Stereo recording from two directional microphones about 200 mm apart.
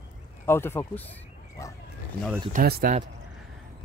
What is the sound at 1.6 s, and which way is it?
Dog, 15° left (ahead or behind).